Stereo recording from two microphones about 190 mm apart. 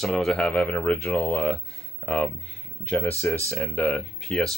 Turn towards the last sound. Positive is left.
turn(degrees=0)  # may be behind; listen again after turning